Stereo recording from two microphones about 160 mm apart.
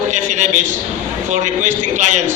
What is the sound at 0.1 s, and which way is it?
A man's voice, 50° right (ahead or behind).